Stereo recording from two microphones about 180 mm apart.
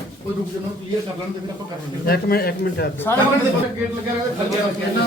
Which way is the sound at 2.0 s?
60° left (ahead or behind).